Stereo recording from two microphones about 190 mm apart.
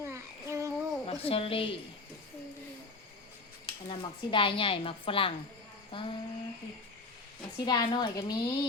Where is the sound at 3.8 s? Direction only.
25° left (ahead or behind).